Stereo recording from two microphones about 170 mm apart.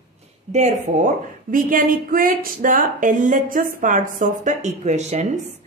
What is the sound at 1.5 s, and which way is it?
A woman's voice, 55° right (ahead or behind).